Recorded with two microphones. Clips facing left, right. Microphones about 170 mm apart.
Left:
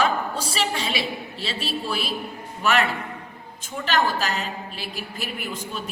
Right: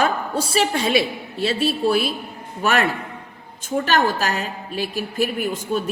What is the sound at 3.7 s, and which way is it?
A woman's voice, 50° right (ahead or behind).